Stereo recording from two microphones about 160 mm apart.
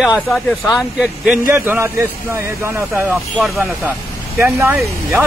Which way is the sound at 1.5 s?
15° right (ahead or behind).